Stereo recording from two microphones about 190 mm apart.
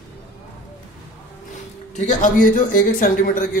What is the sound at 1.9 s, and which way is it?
A man's voice, 40° left (ahead or behind).